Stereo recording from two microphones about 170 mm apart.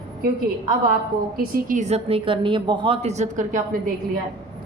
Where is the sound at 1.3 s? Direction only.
55° right (ahead or behind).